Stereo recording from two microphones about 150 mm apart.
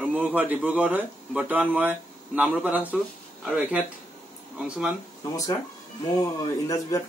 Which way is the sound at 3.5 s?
10° right (ahead or behind).